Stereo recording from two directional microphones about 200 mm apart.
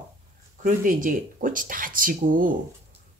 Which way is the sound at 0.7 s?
40° right (ahead or behind).